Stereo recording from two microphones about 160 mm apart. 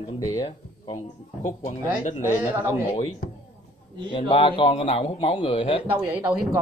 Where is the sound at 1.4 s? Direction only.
50° left (ahead or behind).